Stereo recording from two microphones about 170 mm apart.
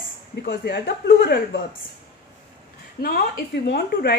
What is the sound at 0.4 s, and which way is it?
A woman's voice, 70° left (ahead or behind).